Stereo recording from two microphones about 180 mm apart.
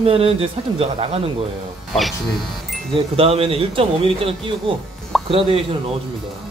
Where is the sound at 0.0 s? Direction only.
35° right (ahead or behind).